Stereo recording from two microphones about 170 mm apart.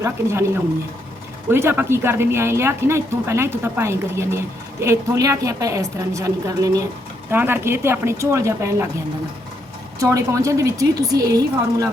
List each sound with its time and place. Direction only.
0.0 s speech: 15° right (ahead or behind)
10.0 s a woman's voice: 20° right (ahead or behind)